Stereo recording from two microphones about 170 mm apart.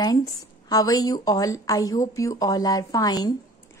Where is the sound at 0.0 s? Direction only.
20° left (ahead or behind).